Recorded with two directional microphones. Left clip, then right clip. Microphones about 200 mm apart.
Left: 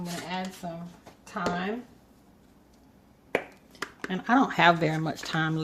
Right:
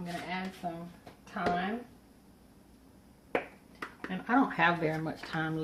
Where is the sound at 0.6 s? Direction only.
50° left (ahead or behind).